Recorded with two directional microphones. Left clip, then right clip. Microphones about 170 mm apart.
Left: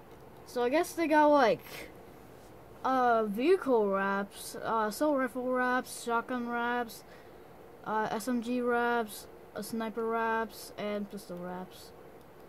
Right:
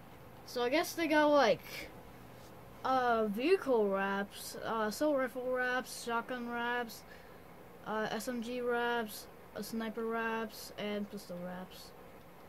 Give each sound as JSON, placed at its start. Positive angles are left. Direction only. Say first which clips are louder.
{"t": 0.5, "sound": "a woman's voice", "louder": "left 3 dB", "side_deg": 25}